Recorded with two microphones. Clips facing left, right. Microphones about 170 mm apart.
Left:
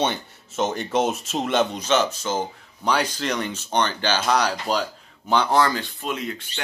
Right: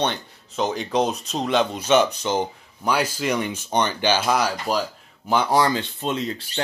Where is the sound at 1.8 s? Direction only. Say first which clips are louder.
Right 3 dB; 10° right (ahead or behind).